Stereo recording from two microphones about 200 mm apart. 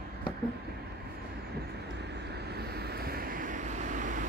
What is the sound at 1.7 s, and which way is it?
Vehicle, 55° right (ahead or behind).